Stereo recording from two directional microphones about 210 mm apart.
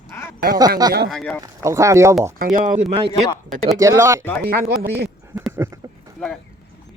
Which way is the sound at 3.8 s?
15° right (ahead or behind).